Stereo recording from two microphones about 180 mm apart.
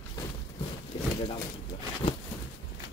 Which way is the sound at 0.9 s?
25° left (ahead or behind).